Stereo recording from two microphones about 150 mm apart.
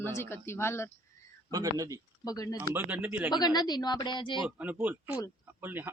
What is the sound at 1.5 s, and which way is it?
Speech, 25° right (ahead or behind).